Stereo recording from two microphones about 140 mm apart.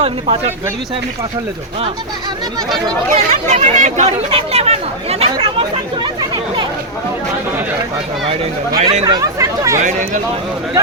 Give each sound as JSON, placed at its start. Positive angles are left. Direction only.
{"t": 0.0, "sound": "speech", "side_deg": -40}
{"t": 3.1, "sound": "speech", "side_deg": -60}
{"t": 9.0, "sound": "speech", "side_deg": -25}